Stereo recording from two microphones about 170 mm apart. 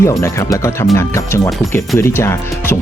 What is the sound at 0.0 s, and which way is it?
Speech, 15° left (ahead or behind).